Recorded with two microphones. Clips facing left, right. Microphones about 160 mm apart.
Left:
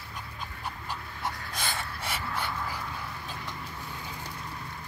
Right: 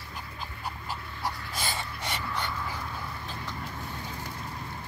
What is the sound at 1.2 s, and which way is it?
Dog, centre (ahead or behind).